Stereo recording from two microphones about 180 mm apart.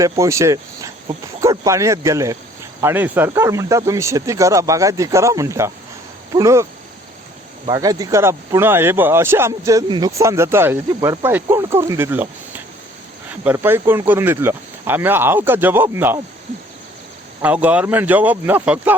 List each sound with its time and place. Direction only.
0.0 s speech: 15° right (ahead or behind)
17.4 s speech: 10° right (ahead or behind)